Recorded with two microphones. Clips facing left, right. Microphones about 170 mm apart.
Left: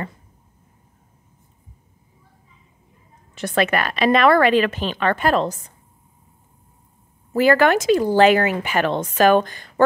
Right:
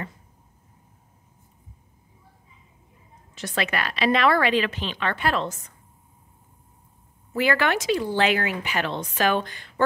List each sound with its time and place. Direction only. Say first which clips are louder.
3.3 s speech: left 7 dB; 55° left (ahead or behind); by 5.8 s 35° left (ahead or behind)
7.3 s speech: left 7 dB; 45° left (ahead or behind)